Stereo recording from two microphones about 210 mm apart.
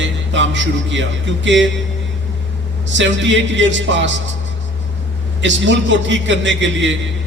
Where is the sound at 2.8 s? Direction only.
60° right (ahead or behind).